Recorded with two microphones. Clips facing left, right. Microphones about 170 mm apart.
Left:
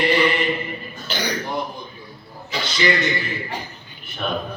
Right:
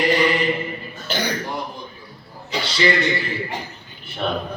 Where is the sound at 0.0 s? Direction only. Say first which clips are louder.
Right 1 dB; 40° right (ahead or behind).